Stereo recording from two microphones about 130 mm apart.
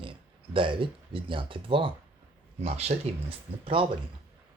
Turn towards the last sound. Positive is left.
turn(degrees=-45)  # may be behind; listen again after turning